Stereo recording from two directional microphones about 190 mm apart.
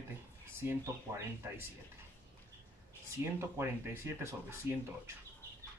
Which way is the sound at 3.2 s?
15° right (ahead or behind).